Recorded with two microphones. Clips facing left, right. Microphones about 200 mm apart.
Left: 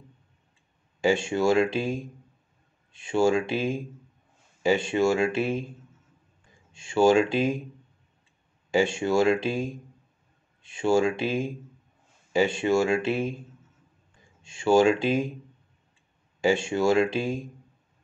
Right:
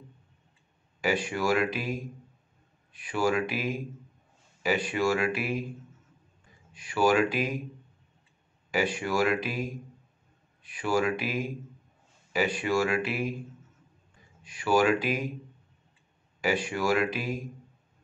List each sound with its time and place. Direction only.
1.0 s speech: 25° left (ahead or behind)
6.7 s speech: 25° left (ahead or behind)
8.7 s speech: 25° left (ahead or behind)
14.4 s speech: 25° left (ahead or behind)
16.3 s speech: 25° left (ahead or behind)